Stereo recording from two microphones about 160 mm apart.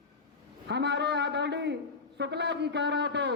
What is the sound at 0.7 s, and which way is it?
A man's voice, 90° right.